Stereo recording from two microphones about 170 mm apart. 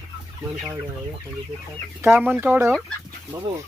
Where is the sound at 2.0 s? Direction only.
15° right (ahead or behind).